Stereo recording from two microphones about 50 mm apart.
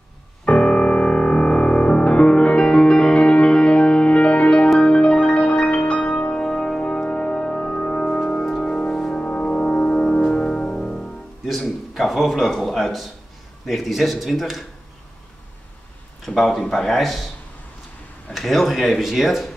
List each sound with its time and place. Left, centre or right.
0.5 s music: centre
11.4 s a sound: centre
13.7 s speech: centre
16.3 s speech: centre
18.3 s speech: centre